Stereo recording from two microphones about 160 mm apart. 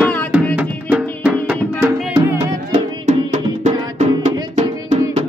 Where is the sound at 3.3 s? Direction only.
50° right (ahead or behind).